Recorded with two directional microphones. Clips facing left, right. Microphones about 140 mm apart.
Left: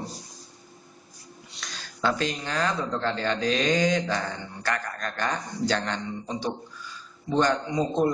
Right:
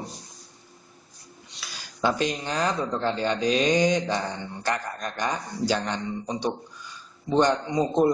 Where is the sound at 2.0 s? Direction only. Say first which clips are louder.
Right 2 dB; 15° right (ahead or behind).